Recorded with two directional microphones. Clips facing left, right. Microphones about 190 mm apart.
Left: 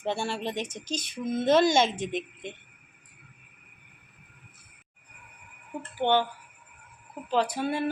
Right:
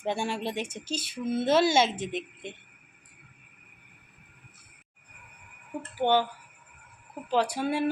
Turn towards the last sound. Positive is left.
turn(degrees=-10)  # may be behind; listen again after turning